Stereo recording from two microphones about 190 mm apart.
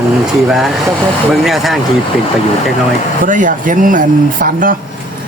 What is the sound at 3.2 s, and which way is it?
Speech, 45° right (ahead or behind).